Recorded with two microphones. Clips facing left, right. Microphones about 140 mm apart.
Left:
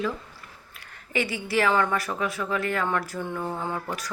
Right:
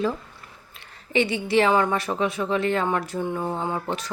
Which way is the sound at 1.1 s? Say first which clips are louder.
Right 5 dB; 25° right (ahead or behind).